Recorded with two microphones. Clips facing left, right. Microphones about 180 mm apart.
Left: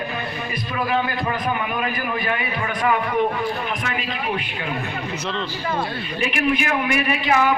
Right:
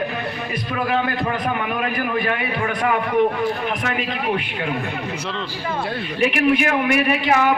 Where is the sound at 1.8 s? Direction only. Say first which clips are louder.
Right 3 dB; 60° right (ahead or behind).